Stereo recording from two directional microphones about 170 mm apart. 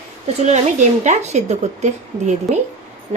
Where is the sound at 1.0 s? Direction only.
40° right (ahead or behind).